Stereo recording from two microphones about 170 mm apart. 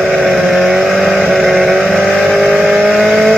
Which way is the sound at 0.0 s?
Centre (ahead or behind).